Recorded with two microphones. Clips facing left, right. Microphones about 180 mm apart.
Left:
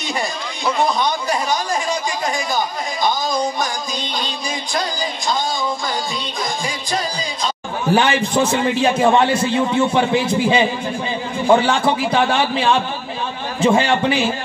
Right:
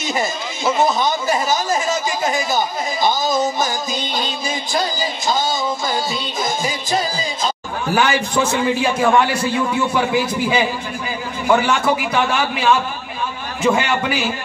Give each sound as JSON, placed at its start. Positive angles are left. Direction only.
{"t": 0.7, "sound": "a man's voice", "side_deg": -5}
{"t": 4.7, "sound": "a man's voice", "side_deg": -5}
{"t": 6.6, "sound": "a man's voice", "side_deg": -5}
{"t": 7.9, "sound": "a man's voice", "side_deg": 25}